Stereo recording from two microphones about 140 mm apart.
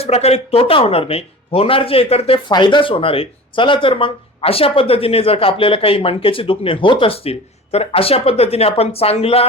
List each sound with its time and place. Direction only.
0.0 s speech: 50° left (ahead or behind)
2.5 s speech: 35° left (ahead or behind)